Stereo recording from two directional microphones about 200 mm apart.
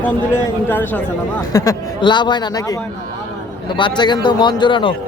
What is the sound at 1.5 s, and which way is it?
A man's voice, 20° left (ahead or behind).